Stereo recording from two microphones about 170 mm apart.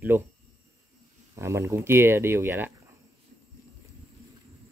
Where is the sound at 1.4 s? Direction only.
15° right (ahead or behind).